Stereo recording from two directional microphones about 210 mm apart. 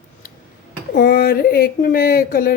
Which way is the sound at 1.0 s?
45° left (ahead or behind).